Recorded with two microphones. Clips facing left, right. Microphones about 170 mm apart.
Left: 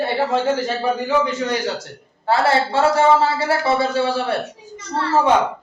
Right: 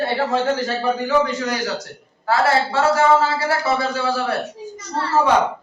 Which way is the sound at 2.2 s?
30° left (ahead or behind).